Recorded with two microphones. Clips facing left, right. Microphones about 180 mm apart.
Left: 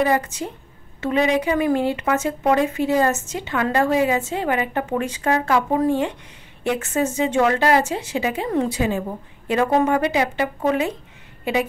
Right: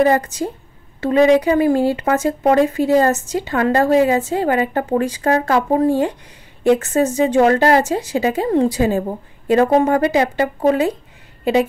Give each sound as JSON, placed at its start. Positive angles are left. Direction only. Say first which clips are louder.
{"t": 0.0, "sound": "speech", "louder": "right 5 dB", "side_deg": -40}